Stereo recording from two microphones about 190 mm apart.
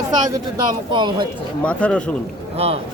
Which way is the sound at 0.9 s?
25° right (ahead or behind).